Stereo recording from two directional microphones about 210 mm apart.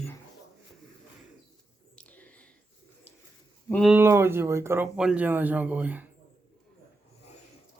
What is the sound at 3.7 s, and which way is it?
Speech, centre (ahead or behind).